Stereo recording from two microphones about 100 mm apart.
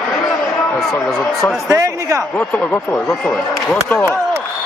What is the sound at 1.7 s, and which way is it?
Speech, 30° right (ahead or behind).